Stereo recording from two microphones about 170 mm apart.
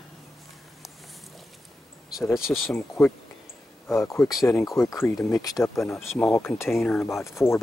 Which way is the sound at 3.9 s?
15° left (ahead or behind).